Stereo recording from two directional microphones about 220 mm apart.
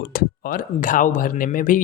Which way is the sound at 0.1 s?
40° left (ahead or behind).